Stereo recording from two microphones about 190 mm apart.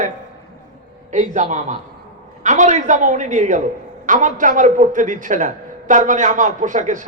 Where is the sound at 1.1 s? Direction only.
40° right (ahead or behind).